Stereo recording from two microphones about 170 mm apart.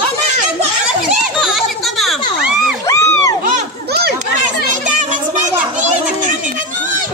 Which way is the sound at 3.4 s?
70° right (ahead or behind).